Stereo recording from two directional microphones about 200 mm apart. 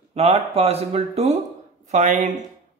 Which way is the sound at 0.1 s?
30° right (ahead or behind).